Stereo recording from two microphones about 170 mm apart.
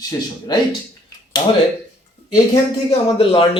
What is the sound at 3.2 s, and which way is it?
Speech, 30° left (ahead or behind).